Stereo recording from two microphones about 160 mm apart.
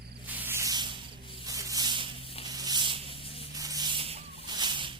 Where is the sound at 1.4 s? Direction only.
20° right (ahead or behind).